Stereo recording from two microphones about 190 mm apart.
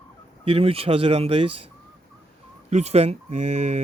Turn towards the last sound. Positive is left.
turn(degrees=-35)  # may be behind; listen again after turning